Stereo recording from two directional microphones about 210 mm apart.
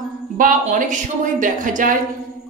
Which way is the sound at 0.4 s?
40° right (ahead or behind).